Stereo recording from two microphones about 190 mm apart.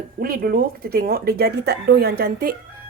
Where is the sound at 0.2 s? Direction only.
50° right (ahead or behind).